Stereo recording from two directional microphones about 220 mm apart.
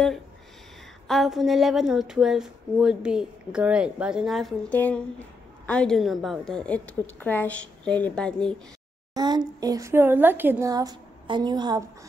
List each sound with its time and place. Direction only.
1.0 s a woman's voice: centre (ahead or behind)
9.1 s a woman's voice: 20° right (ahead or behind)